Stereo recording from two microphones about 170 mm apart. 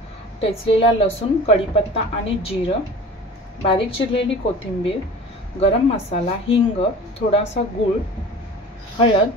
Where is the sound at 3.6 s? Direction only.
30° left (ahead or behind).